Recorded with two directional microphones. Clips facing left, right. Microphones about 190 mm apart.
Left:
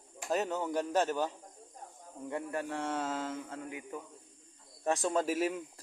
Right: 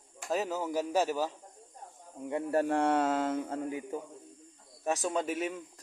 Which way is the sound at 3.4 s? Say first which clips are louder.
Right 7 dB; 35° right (ahead or behind).